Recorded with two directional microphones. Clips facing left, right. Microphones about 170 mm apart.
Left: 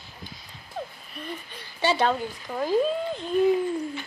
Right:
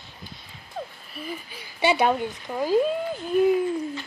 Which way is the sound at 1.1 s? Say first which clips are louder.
Right 4 dB; 5° right (ahead or behind).